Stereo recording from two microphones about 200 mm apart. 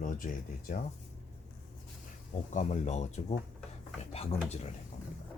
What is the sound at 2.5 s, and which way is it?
Speech, 35° left (ahead or behind).